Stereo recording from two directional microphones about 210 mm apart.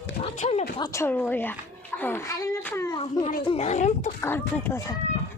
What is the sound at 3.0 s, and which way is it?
A child's voice, 25° left (ahead or behind).